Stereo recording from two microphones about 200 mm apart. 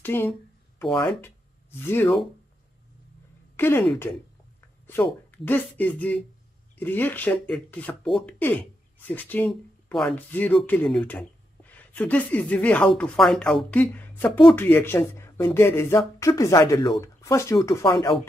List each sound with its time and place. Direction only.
0.0 s a sound: 10° left (ahead or behind)
1.0 s speech: 10° left (ahead or behind)
3.5 s speech: 10° left (ahead or behind)